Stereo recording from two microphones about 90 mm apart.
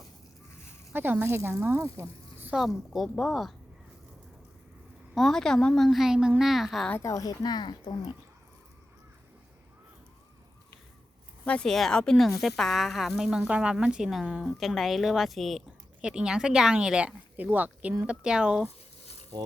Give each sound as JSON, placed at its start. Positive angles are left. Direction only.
{"t": 0.9, "sound": "speech", "side_deg": -20}
{"t": 1.4, "sound": "speech", "side_deg": -35}
{"t": 2.6, "sound": "a woman's voice", "side_deg": 0}
{"t": 5.1, "sound": "a woman's voice", "side_deg": 5}
{"t": 7.0, "sound": "speech", "side_deg": 40}
{"t": 11.4, "sound": "a woman's voice", "side_deg": 15}